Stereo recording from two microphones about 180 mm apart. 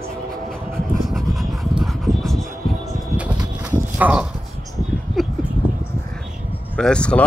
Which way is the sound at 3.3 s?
10° right (ahead or behind).